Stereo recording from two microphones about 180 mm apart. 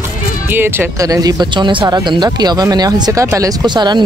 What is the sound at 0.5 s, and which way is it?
Speech, 10° right (ahead or behind).